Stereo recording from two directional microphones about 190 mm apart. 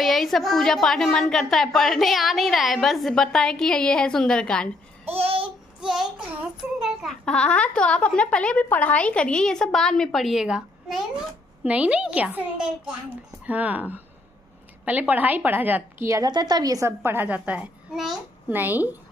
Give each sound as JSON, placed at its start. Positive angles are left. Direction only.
{"t": 0.0, "sound": "a woman's voice", "side_deg": 0}
{"t": 5.1, "sound": "babbling", "side_deg": -30}
{"t": 5.8, "sound": "child singing", "side_deg": -5}
{"t": 6.8, "sound": "a woman's voice", "side_deg": 0}